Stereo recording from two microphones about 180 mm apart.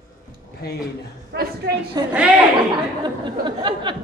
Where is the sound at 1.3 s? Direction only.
60° right (ahead or behind).